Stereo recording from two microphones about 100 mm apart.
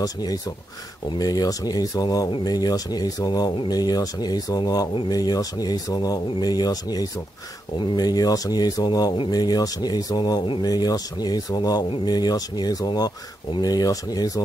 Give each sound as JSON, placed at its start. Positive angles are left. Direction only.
{"t": 0.0, "sound": "speech", "side_deg": 40}